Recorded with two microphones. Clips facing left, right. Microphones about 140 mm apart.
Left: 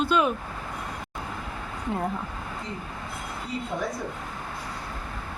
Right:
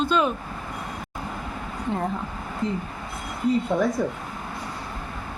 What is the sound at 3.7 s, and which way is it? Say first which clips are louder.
Speech: right 5 dB; 80° right.